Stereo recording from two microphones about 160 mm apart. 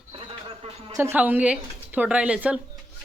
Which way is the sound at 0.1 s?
35° right (ahead or behind).